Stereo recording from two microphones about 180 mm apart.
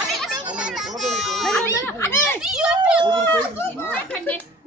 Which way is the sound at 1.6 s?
15° left (ahead or behind).